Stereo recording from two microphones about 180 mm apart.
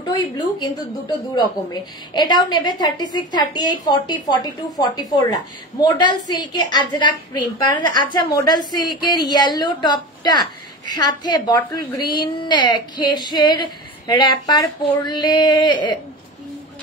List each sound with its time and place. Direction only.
0.1 s a woman's voice: 25° left (ahead or behind)